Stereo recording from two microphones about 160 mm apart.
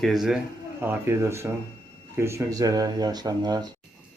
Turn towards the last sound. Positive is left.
turn(degrees=-25)  # may be behind; listen again after turning